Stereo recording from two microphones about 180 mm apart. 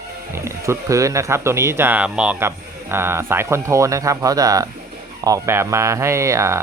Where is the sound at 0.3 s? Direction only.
15° right (ahead or behind).